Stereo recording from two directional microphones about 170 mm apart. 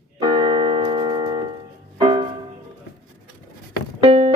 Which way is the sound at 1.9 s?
30° right (ahead or behind).